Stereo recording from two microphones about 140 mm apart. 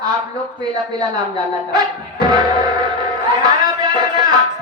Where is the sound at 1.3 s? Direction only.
30° right (ahead or behind).